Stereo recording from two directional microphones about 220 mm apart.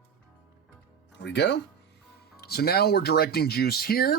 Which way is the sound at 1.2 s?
50° left (ahead or behind).